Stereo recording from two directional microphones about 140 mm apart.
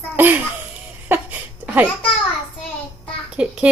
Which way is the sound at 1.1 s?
10° right (ahead or behind).